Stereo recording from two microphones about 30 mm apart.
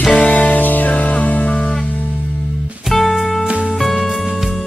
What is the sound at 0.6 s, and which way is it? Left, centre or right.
Music, left.